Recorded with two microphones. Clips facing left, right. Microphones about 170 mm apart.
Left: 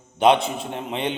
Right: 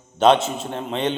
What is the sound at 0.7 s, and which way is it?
Speech, 15° left (ahead or behind).